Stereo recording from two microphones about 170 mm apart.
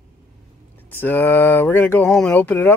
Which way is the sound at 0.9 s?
10° left (ahead or behind).